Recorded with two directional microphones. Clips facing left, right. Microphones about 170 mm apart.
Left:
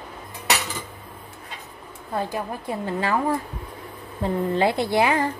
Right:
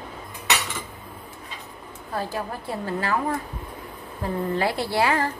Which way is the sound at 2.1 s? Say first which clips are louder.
Left 2 dB; 20° left (ahead or behind).